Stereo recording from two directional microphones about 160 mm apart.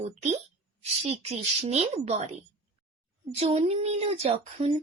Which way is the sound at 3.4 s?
40° right (ahead or behind).